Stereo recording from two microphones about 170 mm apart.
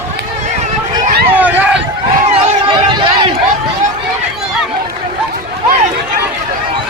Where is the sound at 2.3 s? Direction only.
25° right (ahead or behind).